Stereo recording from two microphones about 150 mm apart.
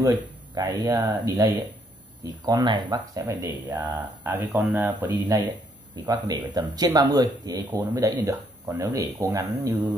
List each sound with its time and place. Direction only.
0.0 s speech: 20° right (ahead or behind)
3.4 s speech: 10° right (ahead or behind)